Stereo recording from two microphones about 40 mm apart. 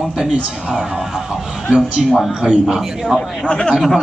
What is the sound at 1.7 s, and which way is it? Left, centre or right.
Speech, centre.